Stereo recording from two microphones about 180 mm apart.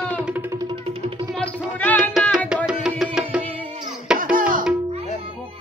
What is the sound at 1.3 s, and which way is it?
Music, 5° left (ahead or behind).